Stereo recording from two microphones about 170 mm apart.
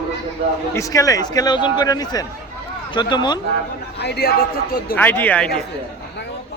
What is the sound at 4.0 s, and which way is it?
Speech, 70° left (ahead or behind).